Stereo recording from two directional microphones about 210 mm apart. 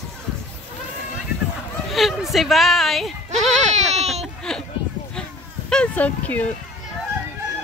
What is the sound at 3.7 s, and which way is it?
Baby cry, 30° right (ahead or behind).